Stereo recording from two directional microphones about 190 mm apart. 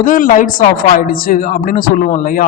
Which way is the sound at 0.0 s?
45° left (ahead or behind).